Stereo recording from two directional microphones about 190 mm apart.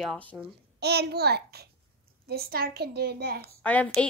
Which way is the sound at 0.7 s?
60° right (ahead or behind).